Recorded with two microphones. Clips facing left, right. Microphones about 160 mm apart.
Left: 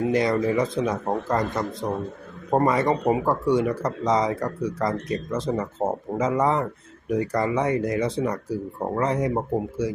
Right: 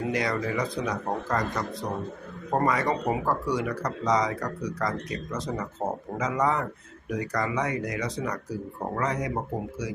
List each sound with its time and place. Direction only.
0.1 s speech: 25° left (ahead or behind)